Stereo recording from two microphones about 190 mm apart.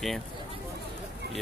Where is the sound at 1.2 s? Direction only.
60° right (ahead or behind).